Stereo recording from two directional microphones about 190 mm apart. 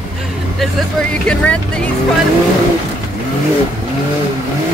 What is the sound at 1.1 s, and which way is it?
Speech, 5° left (ahead or behind).